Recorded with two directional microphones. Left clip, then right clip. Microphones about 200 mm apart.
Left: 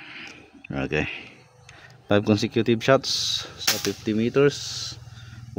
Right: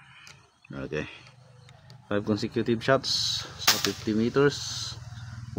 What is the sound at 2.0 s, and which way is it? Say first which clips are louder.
Speech: left 7 dB; 50° left (ahead or behind).